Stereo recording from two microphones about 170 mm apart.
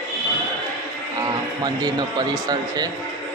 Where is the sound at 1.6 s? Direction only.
25° right (ahead or behind).